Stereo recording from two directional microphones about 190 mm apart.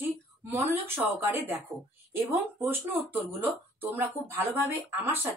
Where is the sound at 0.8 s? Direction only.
10° right (ahead or behind).